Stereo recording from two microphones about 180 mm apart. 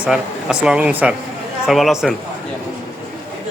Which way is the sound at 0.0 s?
5° right (ahead or behind).